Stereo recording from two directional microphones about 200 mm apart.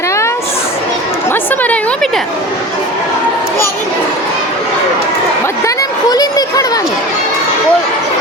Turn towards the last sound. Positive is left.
turn(degrees=20)  # may be behind; listen again after turning